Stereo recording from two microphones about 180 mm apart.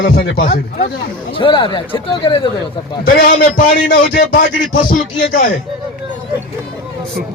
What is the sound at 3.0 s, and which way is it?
Speech, 55° left (ahead or behind).